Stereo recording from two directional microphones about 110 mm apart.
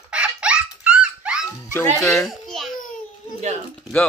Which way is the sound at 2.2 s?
Centre (ahead or behind).